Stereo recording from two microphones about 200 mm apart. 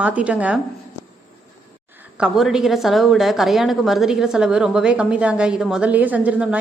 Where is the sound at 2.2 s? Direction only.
Centre (ahead or behind).